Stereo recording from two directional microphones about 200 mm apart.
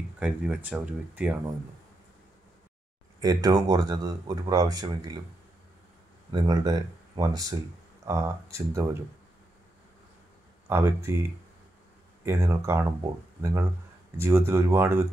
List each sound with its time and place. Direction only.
0.2 s speech: 5° right (ahead or behind)
3.2 s speech: 20° right (ahead or behind)
6.3 s speech: 20° right (ahead or behind)
10.7 s speech: 15° right (ahead or behind)
12.3 s speech: 15° right (ahead or behind)